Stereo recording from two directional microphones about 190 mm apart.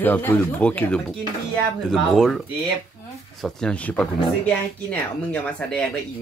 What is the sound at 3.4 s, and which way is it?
Speech, 5° left (ahead or behind).